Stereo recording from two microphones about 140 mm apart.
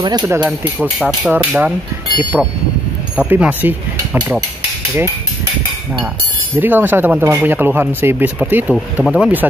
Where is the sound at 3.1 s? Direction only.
10° right (ahead or behind).